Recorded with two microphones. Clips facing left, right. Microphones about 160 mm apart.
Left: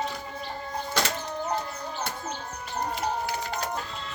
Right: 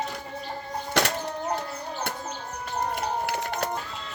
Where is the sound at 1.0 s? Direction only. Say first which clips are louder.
Right 4 dB; 70° right (ahead or behind).